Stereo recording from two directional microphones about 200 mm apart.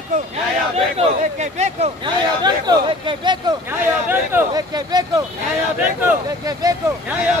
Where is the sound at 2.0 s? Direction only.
20° right (ahead or behind).